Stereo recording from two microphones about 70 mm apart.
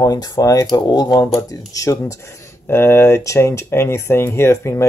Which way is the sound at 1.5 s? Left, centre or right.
Left.